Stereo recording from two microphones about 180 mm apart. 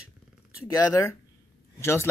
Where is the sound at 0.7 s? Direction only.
15° left (ahead or behind).